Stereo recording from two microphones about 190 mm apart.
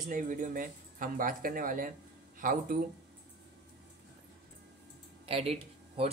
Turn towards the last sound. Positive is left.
turn(degrees=-30)  # may be behind; listen again after turning